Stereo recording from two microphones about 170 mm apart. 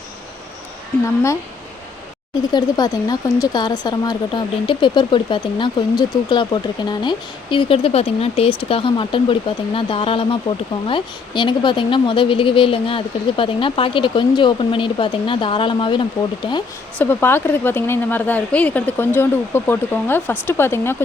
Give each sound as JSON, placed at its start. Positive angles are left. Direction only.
{"t": 1.0, "sound": "a woman's voice", "side_deg": 15}
{"t": 2.5, "sound": "speech", "side_deg": 25}
{"t": 17.0, "sound": "a woman's voice", "side_deg": 15}